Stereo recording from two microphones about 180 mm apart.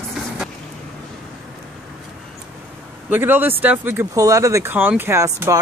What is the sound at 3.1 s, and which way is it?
Speech, 10° right (ahead or behind).